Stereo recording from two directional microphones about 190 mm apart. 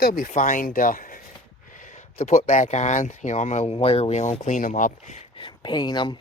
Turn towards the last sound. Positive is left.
turn(degrees=25)  # may be behind; listen again after turning